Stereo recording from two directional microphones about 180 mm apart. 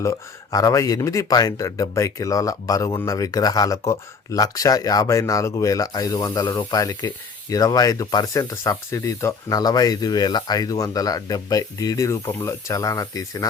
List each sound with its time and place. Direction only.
0.0 s speech: 20° left (ahead or behind)